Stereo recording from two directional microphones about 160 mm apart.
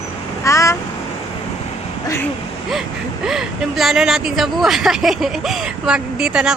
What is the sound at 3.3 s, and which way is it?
A woman's voice, centre (ahead or behind).